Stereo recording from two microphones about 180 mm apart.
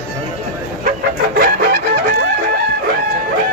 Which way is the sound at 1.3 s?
55° right (ahead or behind).